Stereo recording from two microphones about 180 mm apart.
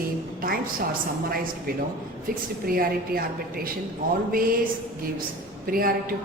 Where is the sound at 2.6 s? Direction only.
55° right (ahead or behind).